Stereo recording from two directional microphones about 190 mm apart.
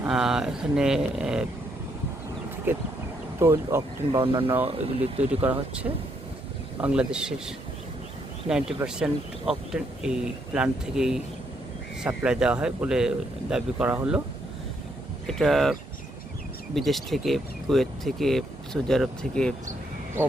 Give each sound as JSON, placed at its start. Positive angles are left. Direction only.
{"t": 0.0, "sound": "speech", "side_deg": -5}
{"t": 2.7, "sound": "speech", "side_deg": -10}
{"t": 4.1, "sound": "speech", "side_deg": -25}
{"t": 5.4, "sound": "speech", "side_deg": -10}
{"t": 6.8, "sound": "speech", "side_deg": -5}
{"t": 15.3, "sound": "speech", "side_deg": 0}